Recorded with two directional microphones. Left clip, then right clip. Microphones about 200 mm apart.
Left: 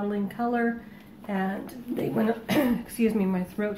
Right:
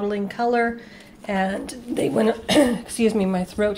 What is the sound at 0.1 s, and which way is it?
A woman's voice, 45° right (ahead or behind).